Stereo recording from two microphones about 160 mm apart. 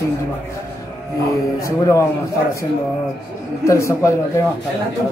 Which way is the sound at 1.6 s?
20° left (ahead or behind).